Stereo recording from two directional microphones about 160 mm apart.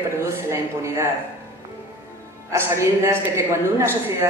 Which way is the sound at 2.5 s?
20° right (ahead or behind).